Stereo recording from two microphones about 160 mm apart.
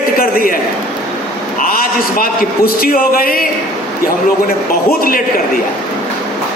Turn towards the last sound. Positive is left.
turn(degrees=65)  # may be behind; listen again after turning